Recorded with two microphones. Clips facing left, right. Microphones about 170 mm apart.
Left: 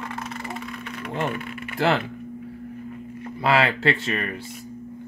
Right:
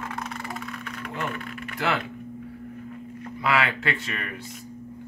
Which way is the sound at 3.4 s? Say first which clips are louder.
Left 4 dB; 30° left (ahead or behind).